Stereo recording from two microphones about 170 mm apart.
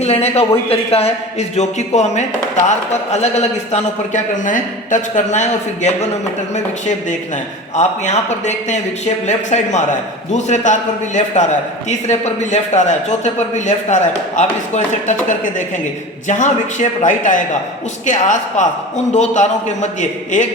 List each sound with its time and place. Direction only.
0.0 s a man's voice: 40° left (ahead or behind)